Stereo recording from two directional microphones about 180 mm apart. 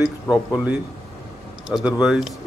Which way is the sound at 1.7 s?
5° right (ahead or behind).